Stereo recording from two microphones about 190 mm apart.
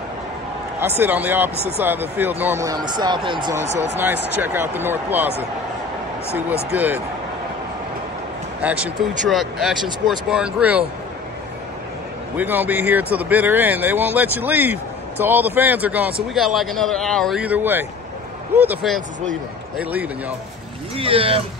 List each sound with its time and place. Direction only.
0.7 s speech: 10° right (ahead or behind)
4.0 s speech: 10° right (ahead or behind)
6.3 s speech: 10° right (ahead or behind)
8.5 s speech: 5° right (ahead or behind)
12.4 s speech: 10° right (ahead or behind)
20.9 s speech: 30° right (ahead or behind)